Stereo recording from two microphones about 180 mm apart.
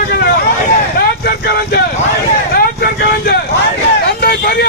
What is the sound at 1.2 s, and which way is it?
Vehicle, 60° left (ahead or behind).